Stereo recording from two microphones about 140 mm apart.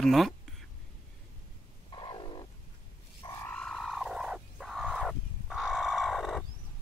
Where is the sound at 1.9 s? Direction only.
35° left (ahead or behind).